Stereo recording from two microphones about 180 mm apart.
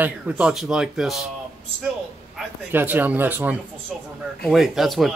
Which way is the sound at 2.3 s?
10° right (ahead or behind).